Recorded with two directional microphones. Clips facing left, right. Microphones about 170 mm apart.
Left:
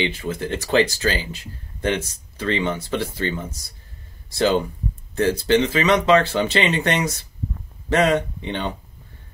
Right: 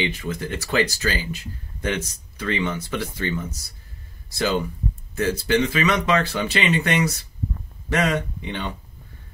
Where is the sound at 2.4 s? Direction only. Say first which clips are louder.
Left 2 dB; 25° left (ahead or behind).